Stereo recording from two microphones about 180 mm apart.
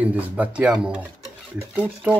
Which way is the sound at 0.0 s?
10° right (ahead or behind).